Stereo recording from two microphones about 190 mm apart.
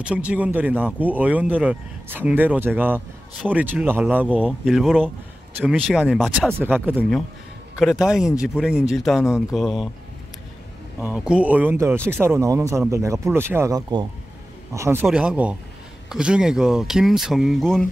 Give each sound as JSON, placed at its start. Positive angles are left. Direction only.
{"t": 0.0, "sound": "speech", "side_deg": -5}
{"t": 11.0, "sound": "speech", "side_deg": -5}